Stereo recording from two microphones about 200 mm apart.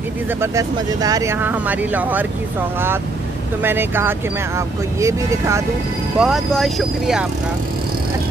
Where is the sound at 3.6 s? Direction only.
10° right (ahead or behind).